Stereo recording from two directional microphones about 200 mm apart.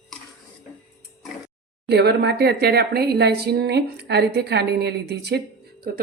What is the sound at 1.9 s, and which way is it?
Speech, 55° right (ahead or behind).